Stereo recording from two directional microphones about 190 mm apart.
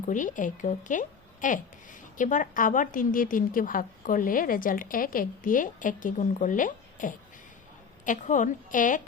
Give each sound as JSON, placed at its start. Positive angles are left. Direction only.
{"t": 0.1, "sound": "speech", "side_deg": 40}